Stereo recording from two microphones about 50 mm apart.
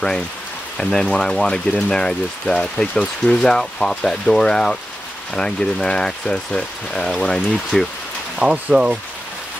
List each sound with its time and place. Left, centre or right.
0.7 s speech: centre
8.4 s speech: centre